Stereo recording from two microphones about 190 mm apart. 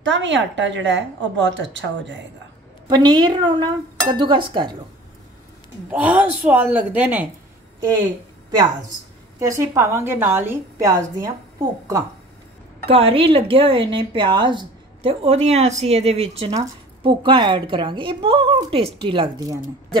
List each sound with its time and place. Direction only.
0.0 s a woman's voice: 70° right (ahead or behind)
2.9 s a woman's voice: 20° right (ahead or behind)
5.9 s a woman's voice: 10° right (ahead or behind)
9.4 s a woman's voice: 15° right (ahead or behind)
12.8 s a woman's voice: 30° right (ahead or behind)